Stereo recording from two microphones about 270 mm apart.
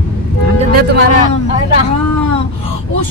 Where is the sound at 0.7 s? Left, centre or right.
Right.